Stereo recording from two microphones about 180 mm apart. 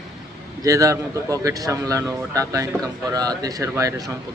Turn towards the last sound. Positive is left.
turn(degrees=-20)  # may be behind; listen again after turning